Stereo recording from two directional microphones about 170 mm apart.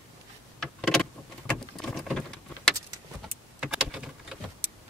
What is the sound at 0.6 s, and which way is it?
Power windows, 5° left (ahead or behind).